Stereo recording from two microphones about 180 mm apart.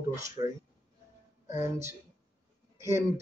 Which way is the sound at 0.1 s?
15° right (ahead or behind).